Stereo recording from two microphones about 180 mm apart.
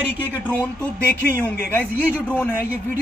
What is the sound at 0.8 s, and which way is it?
Speech, 10° left (ahead or behind).